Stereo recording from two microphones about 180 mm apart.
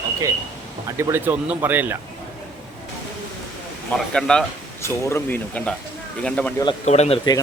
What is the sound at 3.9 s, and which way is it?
Speech, 5° left (ahead or behind).